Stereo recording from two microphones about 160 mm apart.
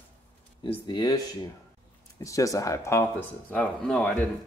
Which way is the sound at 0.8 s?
30° left (ahead or behind).